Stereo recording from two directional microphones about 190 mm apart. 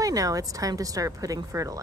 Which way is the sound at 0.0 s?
20° right (ahead or behind).